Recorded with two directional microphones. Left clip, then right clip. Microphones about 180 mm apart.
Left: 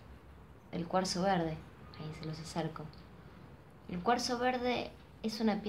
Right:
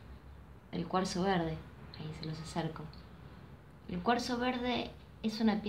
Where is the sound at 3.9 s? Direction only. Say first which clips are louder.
Left 1 dB; 15° left (ahead or behind).